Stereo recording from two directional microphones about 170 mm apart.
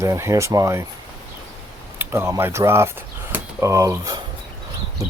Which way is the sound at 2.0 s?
15° right (ahead or behind).